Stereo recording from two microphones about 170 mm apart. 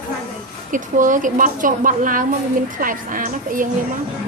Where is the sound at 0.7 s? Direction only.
50° right (ahead or behind).